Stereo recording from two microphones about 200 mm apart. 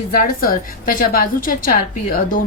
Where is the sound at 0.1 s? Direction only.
45° left (ahead or behind).